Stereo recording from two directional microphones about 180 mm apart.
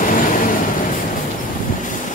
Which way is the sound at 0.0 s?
50° left (ahead or behind).